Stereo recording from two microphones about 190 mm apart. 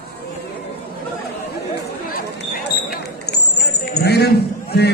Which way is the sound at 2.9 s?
60° left (ahead or behind).